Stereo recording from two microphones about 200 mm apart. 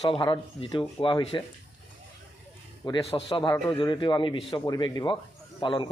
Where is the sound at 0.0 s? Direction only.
25° left (ahead or behind).